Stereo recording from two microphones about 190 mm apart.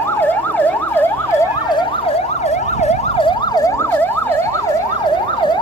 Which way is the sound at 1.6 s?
25° left (ahead or behind).